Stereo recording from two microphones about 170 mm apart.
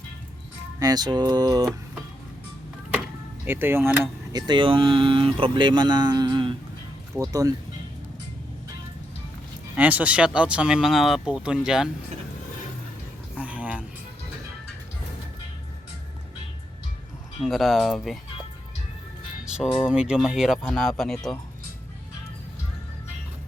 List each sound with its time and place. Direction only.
0.8 s speech: 20° right (ahead or behind)
3.4 s speech: 15° right (ahead or behind)
9.7 s speech: 10° right (ahead or behind)
13.3 s a sound: 10° right (ahead or behind)
17.4 s speech: centre (ahead or behind)
19.5 s speech: 5° right (ahead or behind)